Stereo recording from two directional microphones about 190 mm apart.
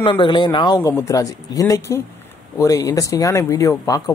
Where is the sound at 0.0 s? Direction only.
25° left (ahead or behind).